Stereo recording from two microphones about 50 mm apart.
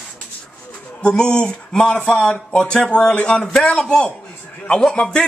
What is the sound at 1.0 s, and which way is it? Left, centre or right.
Speech, centre.